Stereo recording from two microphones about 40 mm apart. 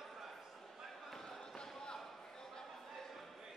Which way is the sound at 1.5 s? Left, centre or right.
Centre.